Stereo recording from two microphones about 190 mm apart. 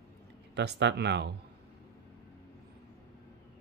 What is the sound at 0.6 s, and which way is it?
Speech, 65° right (ahead or behind).